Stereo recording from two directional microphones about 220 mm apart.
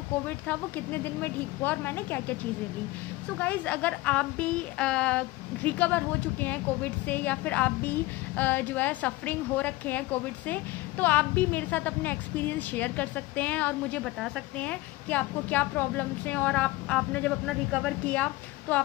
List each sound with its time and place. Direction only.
0.5 s speech: 10° left (ahead or behind)
3.3 s speech: 5° left (ahead or behind)